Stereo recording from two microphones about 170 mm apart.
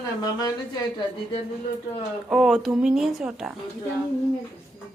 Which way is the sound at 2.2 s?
Centre (ahead or behind).